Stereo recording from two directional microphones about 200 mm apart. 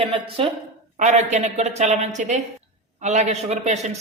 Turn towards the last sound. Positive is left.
turn(degrees=-35)  # may be behind; listen again after turning